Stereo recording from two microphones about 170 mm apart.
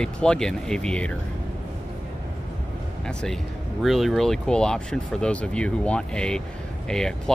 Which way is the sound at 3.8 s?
Centre (ahead or behind).